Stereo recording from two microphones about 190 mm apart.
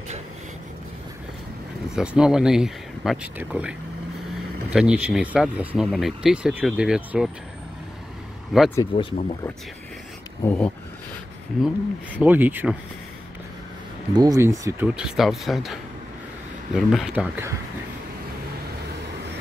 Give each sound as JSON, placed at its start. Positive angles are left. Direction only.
{"t": 2.0, "sound": "speech", "side_deg": -5}
{"t": 8.5, "sound": "speech", "side_deg": 0}
{"t": 8.9, "sound": "speech", "side_deg": 30}
{"t": 10.4, "sound": "speech", "side_deg": 10}
{"t": 11.6, "sound": "speech", "side_deg": -5}
{"t": 14.1, "sound": "speech", "side_deg": -20}
{"t": 15.0, "sound": "speech", "side_deg": 0}